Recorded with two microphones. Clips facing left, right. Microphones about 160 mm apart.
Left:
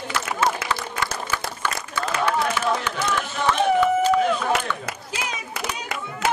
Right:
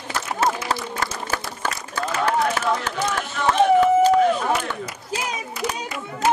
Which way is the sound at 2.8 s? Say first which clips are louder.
Even; 40° right (ahead or behind).